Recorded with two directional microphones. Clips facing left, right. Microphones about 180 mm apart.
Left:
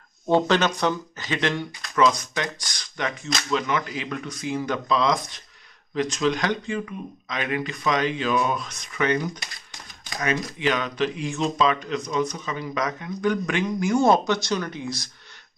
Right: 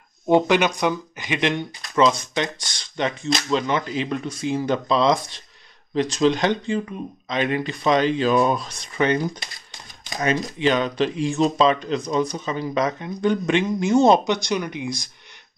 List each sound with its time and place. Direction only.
0.3 s speech: 10° right (ahead or behind)